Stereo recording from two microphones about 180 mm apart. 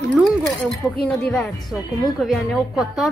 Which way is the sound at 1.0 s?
Centre (ahead or behind).